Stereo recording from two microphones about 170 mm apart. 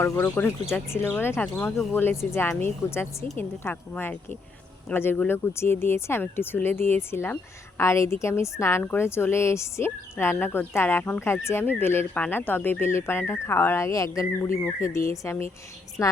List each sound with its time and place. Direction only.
0.0 s a woman's voice: 10° left (ahead or behind)